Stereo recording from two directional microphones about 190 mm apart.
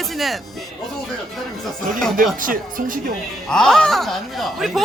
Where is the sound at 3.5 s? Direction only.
5° left (ahead or behind).